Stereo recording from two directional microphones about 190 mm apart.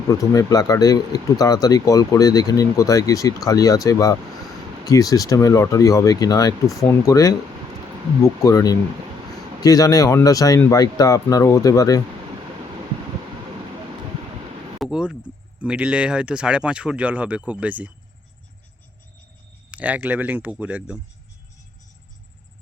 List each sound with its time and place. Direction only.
0.1 s speech: 20° left (ahead or behind)
14.8 s speech: 5° right (ahead or behind)
19.7 s speech: 10° right (ahead or behind)